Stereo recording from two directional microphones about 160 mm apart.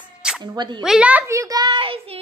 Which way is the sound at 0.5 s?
30° right (ahead or behind).